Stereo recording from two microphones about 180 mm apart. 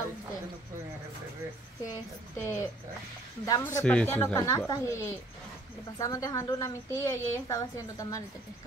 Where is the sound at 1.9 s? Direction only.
15° left (ahead or behind).